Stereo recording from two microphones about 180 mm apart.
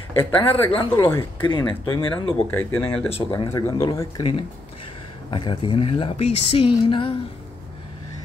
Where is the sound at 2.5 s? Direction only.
10° left (ahead or behind).